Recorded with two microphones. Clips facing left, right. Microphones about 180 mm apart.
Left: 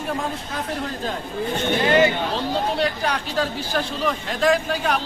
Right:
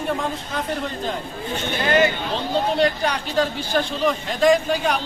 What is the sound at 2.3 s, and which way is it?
Speech, 5° left (ahead or behind).